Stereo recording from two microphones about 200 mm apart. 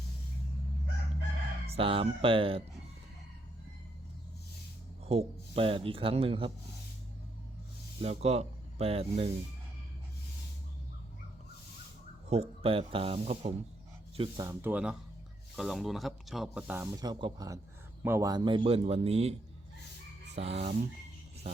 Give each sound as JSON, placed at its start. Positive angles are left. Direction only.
{"t": 1.6, "sound": "speech", "side_deg": -30}
{"t": 5.0, "sound": "speech", "side_deg": -30}
{"t": 8.0, "sound": "speech", "side_deg": -30}
{"t": 12.3, "sound": "speech", "side_deg": -30}
{"t": 14.2, "sound": "speech", "side_deg": -20}